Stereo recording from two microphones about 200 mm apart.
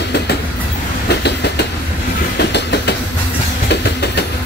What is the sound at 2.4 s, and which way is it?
Train, 55° left (ahead or behind).